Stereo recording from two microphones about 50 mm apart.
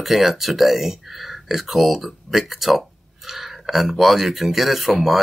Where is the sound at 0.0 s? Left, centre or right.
Centre.